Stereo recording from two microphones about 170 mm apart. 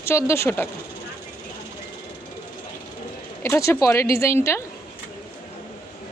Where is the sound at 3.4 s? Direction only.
15° left (ahead or behind).